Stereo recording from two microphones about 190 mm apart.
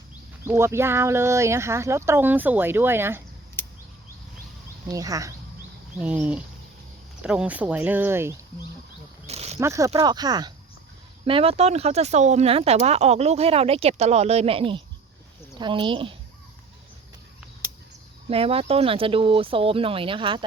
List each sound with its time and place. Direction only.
0.4 s speech: 15° right (ahead or behind)
3.6 s a sound: 10° left (ahead or behind)
4.9 s speech: 20° right (ahead or behind)
9.2 s pulleys: 35° right (ahead or behind)
9.6 s speech: 15° right (ahead or behind)
18.3 s speech: 30° right (ahead or behind)